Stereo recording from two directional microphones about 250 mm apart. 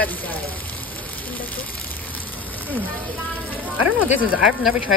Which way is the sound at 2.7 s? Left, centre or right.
Centre.